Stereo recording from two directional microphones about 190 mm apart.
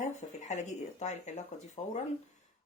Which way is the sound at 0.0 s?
40° left (ahead or behind).